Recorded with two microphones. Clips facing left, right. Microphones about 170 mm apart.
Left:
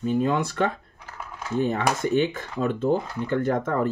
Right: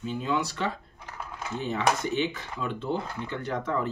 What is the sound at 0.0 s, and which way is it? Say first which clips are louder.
Speech: left 6 dB; 50° left (ahead or behind).